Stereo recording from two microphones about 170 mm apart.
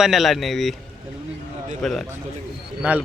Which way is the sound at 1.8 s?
Centre (ahead or behind).